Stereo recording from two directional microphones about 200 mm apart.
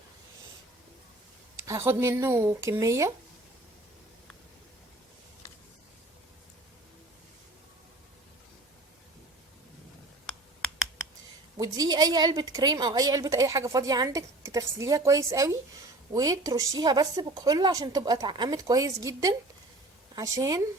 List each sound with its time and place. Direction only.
1.6 s speech: 15° right (ahead or behind)
11.5 s a woman's voice: 20° right (ahead or behind)